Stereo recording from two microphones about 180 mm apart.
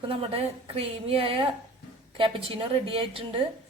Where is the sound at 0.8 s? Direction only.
30° right (ahead or behind).